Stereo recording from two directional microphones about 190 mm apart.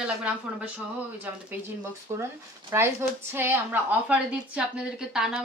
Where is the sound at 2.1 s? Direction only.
15° right (ahead or behind).